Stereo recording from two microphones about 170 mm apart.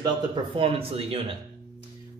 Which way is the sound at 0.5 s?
35° right (ahead or behind).